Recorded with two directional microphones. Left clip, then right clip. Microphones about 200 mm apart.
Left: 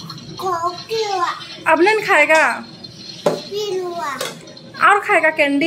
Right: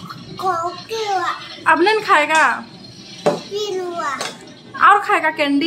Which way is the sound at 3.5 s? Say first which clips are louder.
Even; 25° right (ahead or behind).